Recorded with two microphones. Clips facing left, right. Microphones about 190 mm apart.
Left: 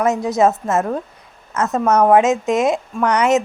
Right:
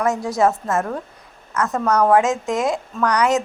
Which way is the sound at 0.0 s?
20° left (ahead or behind).